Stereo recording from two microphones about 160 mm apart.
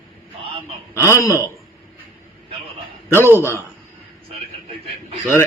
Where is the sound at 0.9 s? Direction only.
20° left (ahead or behind).